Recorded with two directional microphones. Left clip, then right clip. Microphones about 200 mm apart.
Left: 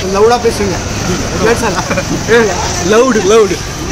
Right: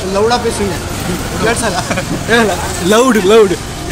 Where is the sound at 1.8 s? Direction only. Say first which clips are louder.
Left 3 dB; 40° right (ahead or behind).